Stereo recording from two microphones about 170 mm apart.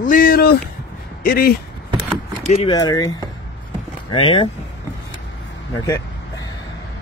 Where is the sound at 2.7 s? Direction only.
20° left (ahead or behind).